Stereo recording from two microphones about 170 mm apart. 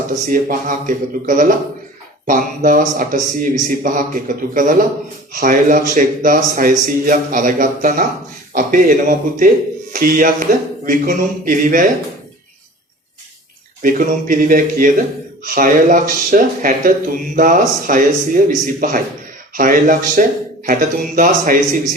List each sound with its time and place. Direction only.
0.3 s a man's voice: 55° right (ahead or behind)
13.8 s a man's voice: 50° right (ahead or behind)